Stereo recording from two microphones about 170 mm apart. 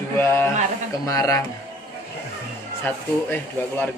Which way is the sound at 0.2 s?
15° left (ahead or behind).